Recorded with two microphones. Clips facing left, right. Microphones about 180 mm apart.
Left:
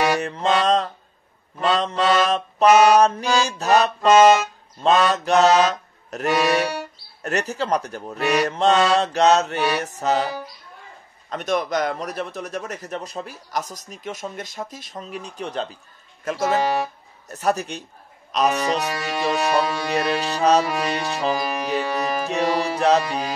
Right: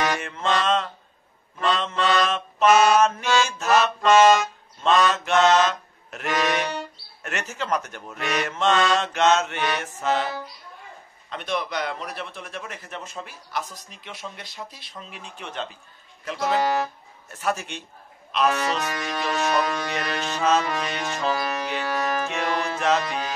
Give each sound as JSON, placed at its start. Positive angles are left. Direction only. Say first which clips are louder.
{"t": 0.0, "sound": "mantra", "louder": "left 5 dB", "side_deg": 35}
{"t": 1.6, "sound": "speech", "louder": "left 3 dB", "side_deg": 35}
{"t": 4.8, "sound": "music", "louder": "left 2 dB", "side_deg": 35}
{"t": 7.2, "sound": "a man's voice", "louder": "left 5 dB", "side_deg": 35}
{"t": 16.3, "sound": "a man's voice", "louder": "left 2 dB", "side_deg": 45}
{"t": 19.3, "sound": "music", "louder": "left 1 dB", "side_deg": 10}
{"t": 19.8, "sound": "speech", "louder": "left 6 dB", "side_deg": 35}
{"t": 21.2, "sound": "music", "louder": "even", "side_deg": 15}
{"t": 22.3, "sound": "music", "louder": "left 5 dB", "side_deg": 35}
{"t": 22.8, "sound": "speech", "louder": "left 5 dB", "side_deg": 35}